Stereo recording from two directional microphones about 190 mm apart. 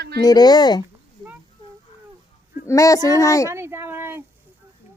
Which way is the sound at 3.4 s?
15° right (ahead or behind).